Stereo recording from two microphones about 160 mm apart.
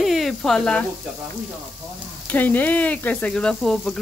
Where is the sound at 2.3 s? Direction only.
10° left (ahead or behind).